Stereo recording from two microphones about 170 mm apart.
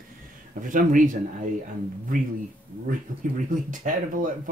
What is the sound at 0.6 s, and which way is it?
Speech, 50° right (ahead or behind).